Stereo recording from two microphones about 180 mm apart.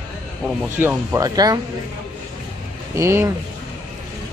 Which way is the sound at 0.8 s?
15° right (ahead or behind).